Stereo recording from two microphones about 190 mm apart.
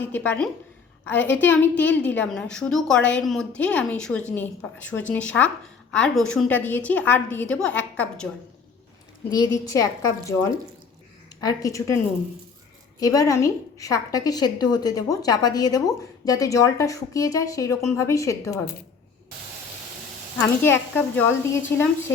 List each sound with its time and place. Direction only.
0.0 s a woman's voice: 10° left (ahead or behind)
9.3 s a woman's voice: 20° left (ahead or behind)
13.0 s a woman's voice: 20° left (ahead or behind)
20.4 s a woman's voice: 10° left (ahead or behind)